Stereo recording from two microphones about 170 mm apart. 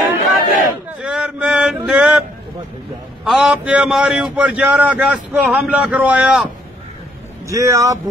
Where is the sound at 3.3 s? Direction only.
5° right (ahead or behind).